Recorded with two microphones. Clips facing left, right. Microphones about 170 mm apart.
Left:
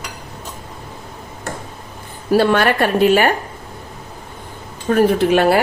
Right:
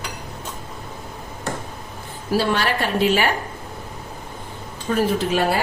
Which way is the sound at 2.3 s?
55° left (ahead or behind).